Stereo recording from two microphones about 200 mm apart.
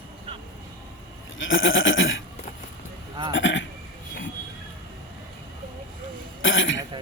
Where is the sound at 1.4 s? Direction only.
75° left (ahead or behind).